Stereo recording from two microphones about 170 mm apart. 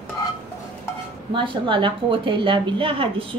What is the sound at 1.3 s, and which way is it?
A woman's voice, 30° right (ahead or behind).